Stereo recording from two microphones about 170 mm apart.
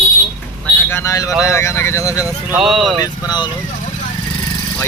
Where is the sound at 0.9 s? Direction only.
20° left (ahead or behind).